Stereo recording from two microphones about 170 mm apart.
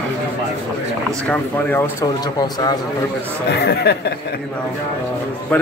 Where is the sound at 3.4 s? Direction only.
70° left (ahead or behind).